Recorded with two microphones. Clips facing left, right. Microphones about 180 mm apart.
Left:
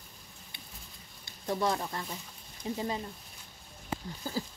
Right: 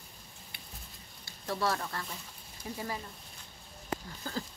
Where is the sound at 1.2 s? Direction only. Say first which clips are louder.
Left 2 dB; 20° left (ahead or behind).